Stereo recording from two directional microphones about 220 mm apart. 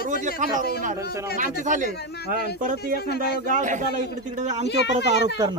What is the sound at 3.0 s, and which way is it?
Speech, 45° left (ahead or behind).